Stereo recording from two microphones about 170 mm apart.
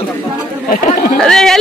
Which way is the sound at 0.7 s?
50° left (ahead or behind).